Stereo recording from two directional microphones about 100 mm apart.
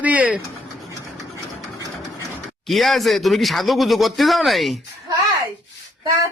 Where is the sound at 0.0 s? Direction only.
15° right (ahead or behind).